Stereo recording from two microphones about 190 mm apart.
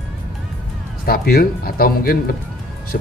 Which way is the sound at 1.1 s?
50° left (ahead or behind).